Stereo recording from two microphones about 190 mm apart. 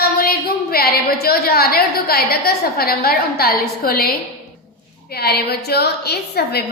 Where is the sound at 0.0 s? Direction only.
50° left (ahead or behind).